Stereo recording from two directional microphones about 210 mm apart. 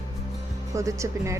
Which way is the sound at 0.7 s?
15° right (ahead or behind).